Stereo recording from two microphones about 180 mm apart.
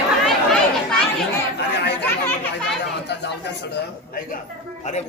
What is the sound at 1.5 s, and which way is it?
Chatter, 70° left (ahead or behind).